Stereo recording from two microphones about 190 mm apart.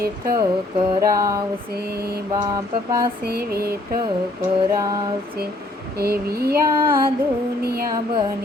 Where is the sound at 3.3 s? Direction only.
55° right (ahead or behind).